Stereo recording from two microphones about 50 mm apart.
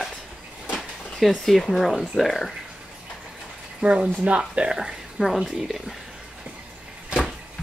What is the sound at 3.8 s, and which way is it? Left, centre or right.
Speech, right.